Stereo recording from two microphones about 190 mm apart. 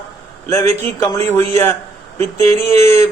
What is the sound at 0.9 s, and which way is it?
Speech, 15° left (ahead or behind).